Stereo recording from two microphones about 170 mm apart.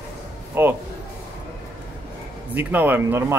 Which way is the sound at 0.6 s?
10° right (ahead or behind).